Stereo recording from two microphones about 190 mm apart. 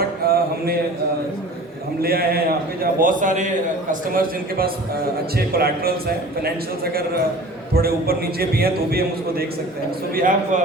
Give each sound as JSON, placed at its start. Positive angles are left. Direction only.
{"t": 0.3, "sound": "a sound", "side_deg": -55}
{"t": 2.0, "sound": "a man's voice", "side_deg": -55}
{"t": 7.7, "sound": "a man's voice", "side_deg": -55}